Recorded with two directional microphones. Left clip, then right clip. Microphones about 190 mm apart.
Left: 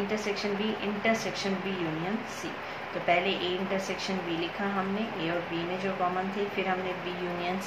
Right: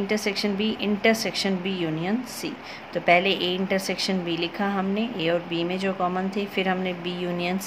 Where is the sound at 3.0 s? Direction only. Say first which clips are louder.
Right 7 dB; 60° right (ahead or behind).